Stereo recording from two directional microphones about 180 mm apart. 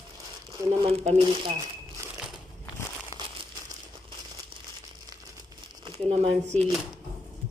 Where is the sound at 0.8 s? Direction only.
30° right (ahead or behind).